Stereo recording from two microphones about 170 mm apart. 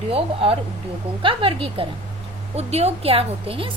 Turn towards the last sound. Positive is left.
turn(degrees=-35)  # may be behind; listen again after turning